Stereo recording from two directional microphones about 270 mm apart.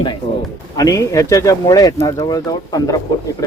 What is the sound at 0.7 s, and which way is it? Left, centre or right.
Speech, centre.